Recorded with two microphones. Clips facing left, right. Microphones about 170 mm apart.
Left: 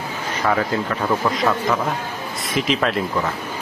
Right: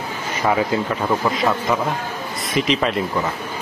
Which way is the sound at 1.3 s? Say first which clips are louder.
Even; centre (ahead or behind).